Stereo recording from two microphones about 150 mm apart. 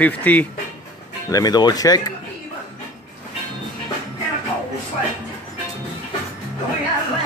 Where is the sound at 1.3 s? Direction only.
25° left (ahead or behind).